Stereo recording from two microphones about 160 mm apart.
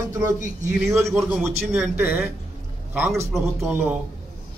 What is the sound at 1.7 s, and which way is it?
A man's voice, 10° right (ahead or behind).